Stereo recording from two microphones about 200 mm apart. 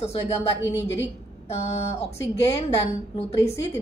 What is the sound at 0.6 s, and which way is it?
Speech, 65° left (ahead or behind).